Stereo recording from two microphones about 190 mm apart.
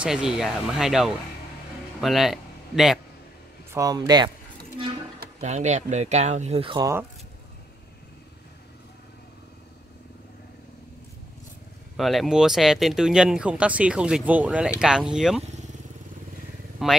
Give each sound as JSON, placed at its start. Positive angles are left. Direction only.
{"t": 0.0, "sound": "speech", "side_deg": -5}
{"t": 3.7, "sound": "speech", "side_deg": -20}
{"t": 5.4, "sound": "speech", "side_deg": -35}
{"t": 12.0, "sound": "speech", "side_deg": 0}
{"t": 16.8, "sound": "speech", "side_deg": 0}